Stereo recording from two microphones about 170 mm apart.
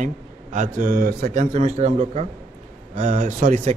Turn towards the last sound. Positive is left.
turn(degrees=-45)  # may be behind; listen again after turning